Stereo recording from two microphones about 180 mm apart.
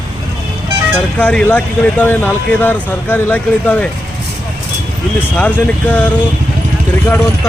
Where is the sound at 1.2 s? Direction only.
10° left (ahead or behind).